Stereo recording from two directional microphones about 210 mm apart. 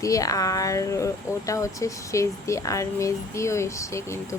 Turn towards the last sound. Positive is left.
turn(degrees=15)  # may be behind; listen again after turning